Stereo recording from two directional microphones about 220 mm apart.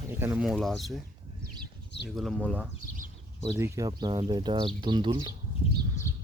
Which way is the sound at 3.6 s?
15° right (ahead or behind).